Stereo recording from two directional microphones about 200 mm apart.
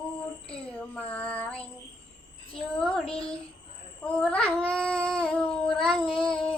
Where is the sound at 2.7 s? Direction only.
5° left (ahead or behind).